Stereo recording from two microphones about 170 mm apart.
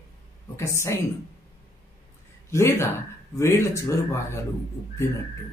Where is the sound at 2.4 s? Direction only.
15° left (ahead or behind).